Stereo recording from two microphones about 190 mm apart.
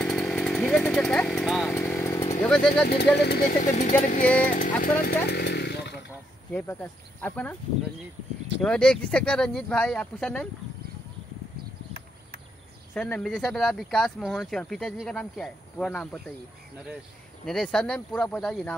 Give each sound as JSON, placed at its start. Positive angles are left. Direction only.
{"t": 0.0, "sound": "chainsaw", "side_deg": 5}
{"t": 2.4, "sound": "speech", "side_deg": 5}
{"t": 2.9, "sound": "speech", "side_deg": 60}
{"t": 6.5, "sound": "speech", "side_deg": 10}
{"t": 8.5, "sound": "speech", "side_deg": 5}
{"t": 12.9, "sound": "speech", "side_deg": 5}
{"t": 16.7, "sound": "speech", "side_deg": -5}